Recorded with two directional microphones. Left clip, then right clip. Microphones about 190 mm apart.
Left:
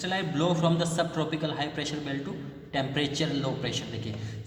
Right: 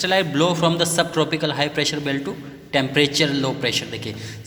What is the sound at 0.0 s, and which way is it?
A man's voice, 35° right (ahead or behind).